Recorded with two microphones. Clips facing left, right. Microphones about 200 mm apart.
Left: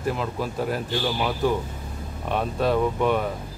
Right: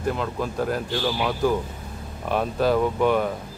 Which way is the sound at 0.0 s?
Centre (ahead or behind).